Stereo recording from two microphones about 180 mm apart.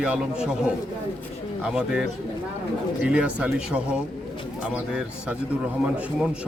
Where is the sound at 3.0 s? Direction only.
5° right (ahead or behind).